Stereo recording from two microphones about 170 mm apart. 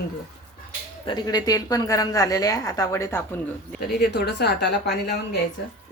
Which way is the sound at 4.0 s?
70° left (ahead or behind).